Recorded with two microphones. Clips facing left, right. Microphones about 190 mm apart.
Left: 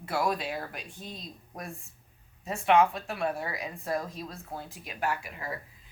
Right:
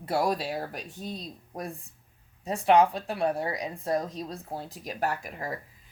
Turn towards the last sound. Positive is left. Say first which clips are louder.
# right 2 dB
turn(degrees=-45)  # may be behind; listen again after turning